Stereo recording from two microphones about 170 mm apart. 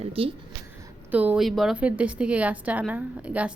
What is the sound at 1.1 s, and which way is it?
A woman's voice, 5° right (ahead or behind).